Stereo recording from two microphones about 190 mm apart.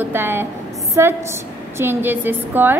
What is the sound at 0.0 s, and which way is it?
A woman's voice, 10° right (ahead or behind).